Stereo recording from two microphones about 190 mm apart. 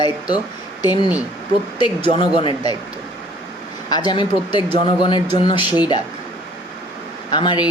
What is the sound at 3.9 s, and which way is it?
Speech, 20° left (ahead or behind).